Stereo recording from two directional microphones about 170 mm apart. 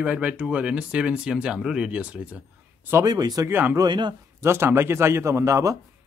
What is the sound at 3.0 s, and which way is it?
Speech, 25° right (ahead or behind).